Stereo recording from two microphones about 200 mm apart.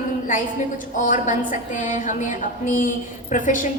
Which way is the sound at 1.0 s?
40° left (ahead or behind).